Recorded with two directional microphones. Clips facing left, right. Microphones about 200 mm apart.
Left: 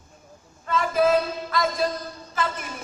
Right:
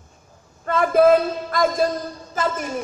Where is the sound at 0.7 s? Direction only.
55° right (ahead or behind).